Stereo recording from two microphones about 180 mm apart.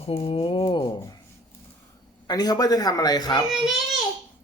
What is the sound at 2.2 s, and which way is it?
A man's voice, 20° left (ahead or behind).